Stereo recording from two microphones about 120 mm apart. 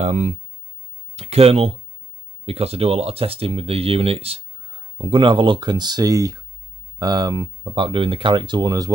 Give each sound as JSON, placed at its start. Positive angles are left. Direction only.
{"t": 0.0, "sound": "speech", "side_deg": -70}
{"t": 1.1, "sound": "speech", "side_deg": -60}